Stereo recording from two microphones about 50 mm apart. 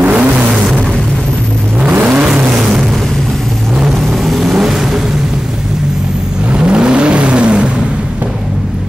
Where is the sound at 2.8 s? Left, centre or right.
Centre; by 8.0 s right.